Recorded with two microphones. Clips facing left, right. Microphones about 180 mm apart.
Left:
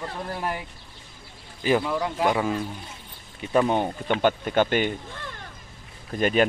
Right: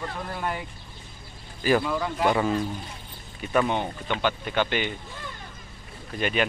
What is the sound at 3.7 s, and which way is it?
Speech, 45° left (ahead or behind).